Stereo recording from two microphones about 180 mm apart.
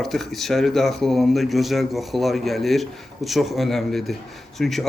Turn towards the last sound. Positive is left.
turn(degrees=0)  # may be behind; listen again after turning